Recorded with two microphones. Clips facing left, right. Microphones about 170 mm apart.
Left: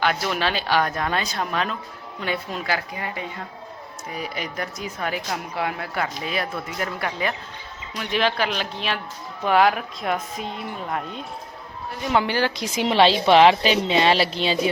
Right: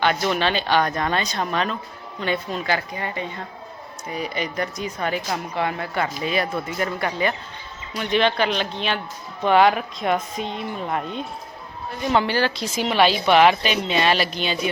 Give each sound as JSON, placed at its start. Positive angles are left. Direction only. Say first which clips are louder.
{"t": 0.0, "sound": "speech", "louder": "right 2 dB", "side_deg": 0}
{"t": 12.1, "sound": "a woman's voice", "louder": "right 1 dB", "side_deg": 15}